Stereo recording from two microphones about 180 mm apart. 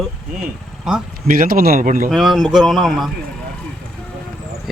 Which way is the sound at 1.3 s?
50° right (ahead or behind).